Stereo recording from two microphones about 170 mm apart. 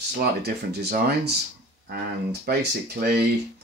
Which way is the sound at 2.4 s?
65° right (ahead or behind).